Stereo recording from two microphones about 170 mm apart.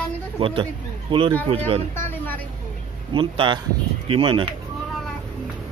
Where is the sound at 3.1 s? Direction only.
30° right (ahead or behind).